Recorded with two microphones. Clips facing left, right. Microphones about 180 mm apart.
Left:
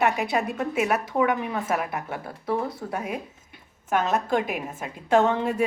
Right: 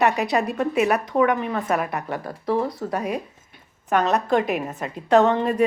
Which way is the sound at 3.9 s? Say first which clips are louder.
Right 4 dB; 75° right (ahead or behind).